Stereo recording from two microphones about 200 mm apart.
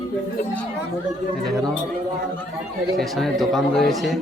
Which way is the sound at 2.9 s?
Centre (ahead or behind).